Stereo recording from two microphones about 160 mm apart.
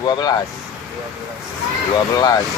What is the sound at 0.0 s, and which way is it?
Speech, 25° left (ahead or behind).